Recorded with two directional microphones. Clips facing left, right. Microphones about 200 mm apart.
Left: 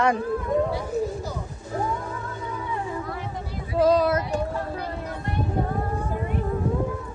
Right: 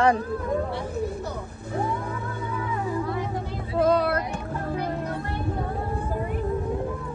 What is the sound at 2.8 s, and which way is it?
Music, 30° right (ahead or behind).